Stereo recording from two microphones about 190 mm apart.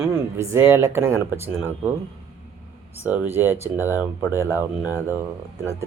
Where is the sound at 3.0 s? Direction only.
10° right (ahead or behind).